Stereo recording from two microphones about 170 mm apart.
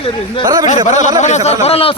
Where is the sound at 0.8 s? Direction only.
45° left (ahead or behind).